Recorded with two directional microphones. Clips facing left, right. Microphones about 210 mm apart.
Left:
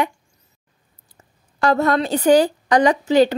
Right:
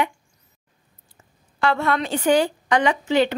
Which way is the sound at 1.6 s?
40° left (ahead or behind).